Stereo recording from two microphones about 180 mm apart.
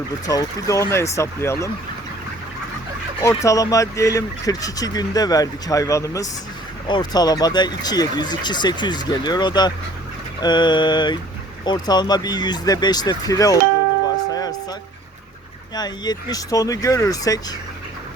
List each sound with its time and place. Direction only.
0.3 s speech: 20° left (ahead or behind)
3.2 s speech: 20° left (ahead or behind)
14.3 s music: 20° left (ahead or behind)
15.7 s speech: 20° left (ahead or behind)